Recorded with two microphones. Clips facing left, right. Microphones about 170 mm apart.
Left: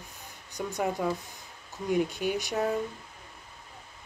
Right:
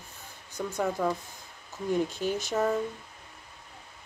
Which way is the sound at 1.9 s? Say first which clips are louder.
Left 1 dB; 15° left (ahead or behind).